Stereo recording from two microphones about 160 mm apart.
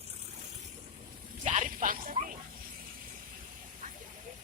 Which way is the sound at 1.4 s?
50° right (ahead or behind).